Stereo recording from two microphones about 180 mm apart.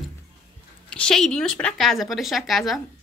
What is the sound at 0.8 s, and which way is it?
A woman's voice, 5° left (ahead or behind).